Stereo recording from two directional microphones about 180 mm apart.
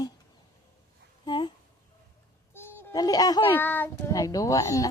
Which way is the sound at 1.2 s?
25° left (ahead or behind).